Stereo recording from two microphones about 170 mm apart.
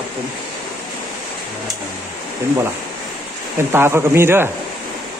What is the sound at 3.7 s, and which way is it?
Speech, 15° right (ahead or behind).